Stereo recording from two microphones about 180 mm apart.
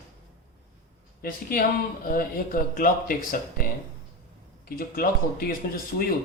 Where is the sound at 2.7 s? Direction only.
50° left (ahead or behind).